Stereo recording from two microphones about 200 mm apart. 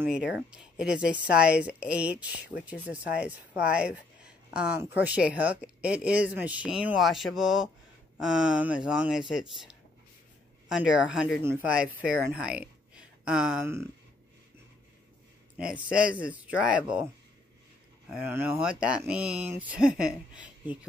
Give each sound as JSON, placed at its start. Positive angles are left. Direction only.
{"t": 0.3, "sound": "speech", "side_deg": -5}
{"t": 2.3, "sound": "speech", "side_deg": 55}
{"t": 2.6, "sound": "speech", "side_deg": -5}
{"t": 15.5, "sound": "speech", "side_deg": -5}
{"t": 18.1, "sound": "speech", "side_deg": -10}